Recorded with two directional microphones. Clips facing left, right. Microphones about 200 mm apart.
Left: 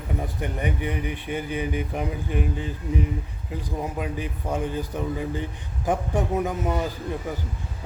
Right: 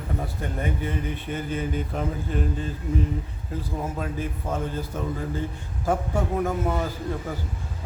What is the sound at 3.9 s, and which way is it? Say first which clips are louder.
Speech: even; 15° left (ahead or behind).